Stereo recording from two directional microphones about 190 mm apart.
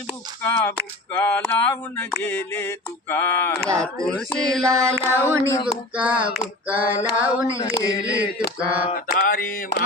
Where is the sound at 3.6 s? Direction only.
15° right (ahead or behind).